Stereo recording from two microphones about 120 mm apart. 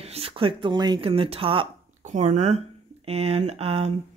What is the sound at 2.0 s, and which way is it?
Speech, 80° right.